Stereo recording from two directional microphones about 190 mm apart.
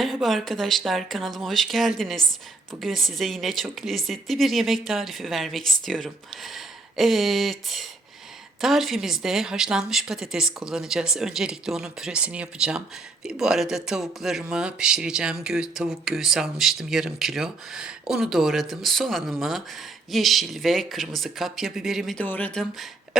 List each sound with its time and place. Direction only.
0.0 s speech: centre (ahead or behind)